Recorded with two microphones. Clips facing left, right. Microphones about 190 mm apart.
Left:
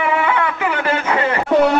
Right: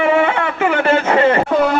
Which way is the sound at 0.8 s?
25° right (ahead or behind).